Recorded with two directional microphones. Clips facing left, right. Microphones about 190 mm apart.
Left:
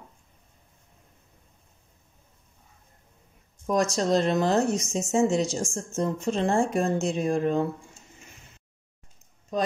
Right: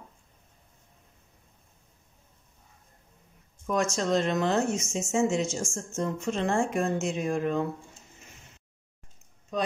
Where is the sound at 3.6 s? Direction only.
35° left (ahead or behind).